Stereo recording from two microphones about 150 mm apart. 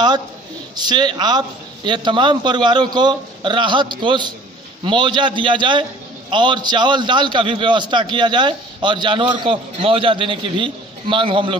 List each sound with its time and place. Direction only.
0.7 s a man's voice: 30° right (ahead or behind)